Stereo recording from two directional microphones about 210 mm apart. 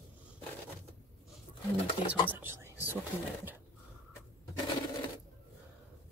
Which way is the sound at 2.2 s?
10° right (ahead or behind).